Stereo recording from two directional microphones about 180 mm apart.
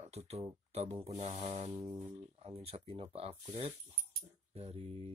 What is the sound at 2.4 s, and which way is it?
Speech, 35° right (ahead or behind).